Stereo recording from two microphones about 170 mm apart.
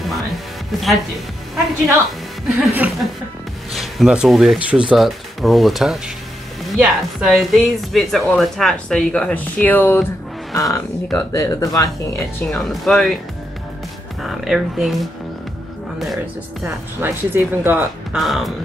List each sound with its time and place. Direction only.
0.0 s music: centre (ahead or behind)
2.4 s speech: 10° right (ahead or behind); by 11.9 s 20° left (ahead or behind)
12.4 s speech: 5° left (ahead or behind)
14.2 s speech: centre (ahead or behind)
16.6 s speech: 10° right (ahead or behind)
18.2 s speech: centre (ahead or behind)